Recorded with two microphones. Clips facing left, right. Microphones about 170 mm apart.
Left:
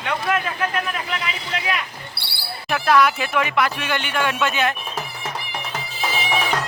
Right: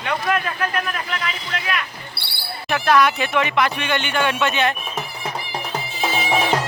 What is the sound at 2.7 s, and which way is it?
Speech, 5° left (ahead or behind).